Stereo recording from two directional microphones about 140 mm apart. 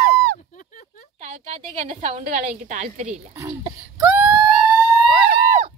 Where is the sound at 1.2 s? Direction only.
50° right (ahead or behind).